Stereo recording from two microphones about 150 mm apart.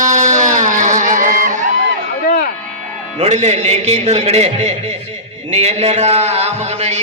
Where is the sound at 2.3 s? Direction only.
90° left.